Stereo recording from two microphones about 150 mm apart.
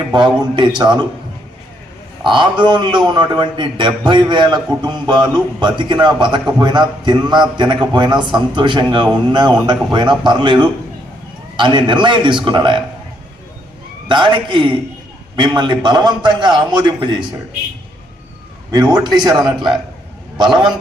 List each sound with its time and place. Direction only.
0.1 s a man's voice: 30° right (ahead or behind)
2.2 s a man's voice: 30° right (ahead or behind)
14.1 s a man's voice: 30° right (ahead or behind)
18.7 s a man's voice: 30° right (ahead or behind)